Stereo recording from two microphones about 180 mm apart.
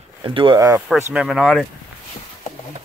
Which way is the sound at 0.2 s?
30° right (ahead or behind).